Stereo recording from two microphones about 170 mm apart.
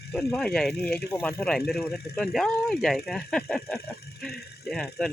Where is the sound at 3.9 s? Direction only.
65° left (ahead or behind).